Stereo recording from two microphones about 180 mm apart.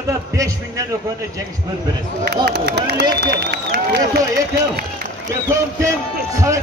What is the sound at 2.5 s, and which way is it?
Speech, 65° right (ahead or behind).